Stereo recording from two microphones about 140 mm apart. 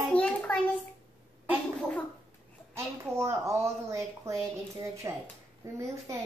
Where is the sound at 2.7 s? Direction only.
20° right (ahead or behind).